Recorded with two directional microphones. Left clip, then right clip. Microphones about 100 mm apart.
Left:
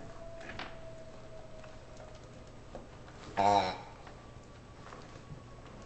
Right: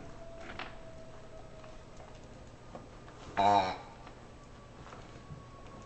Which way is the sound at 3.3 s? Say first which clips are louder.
Right 1 dB; centre (ahead or behind).